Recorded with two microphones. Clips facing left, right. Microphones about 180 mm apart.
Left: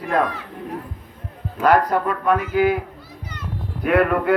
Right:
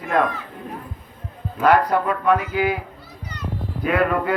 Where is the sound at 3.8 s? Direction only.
60° left (ahead or behind).